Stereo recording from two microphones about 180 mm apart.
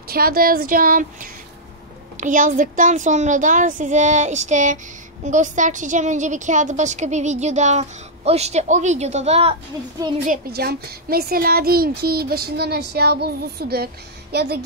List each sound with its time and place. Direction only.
0.1 s a woman's voice: 55° right (ahead or behind); by 9.6 s 35° right (ahead or behind)
10.2 s a child's voice: 55° right (ahead or behind)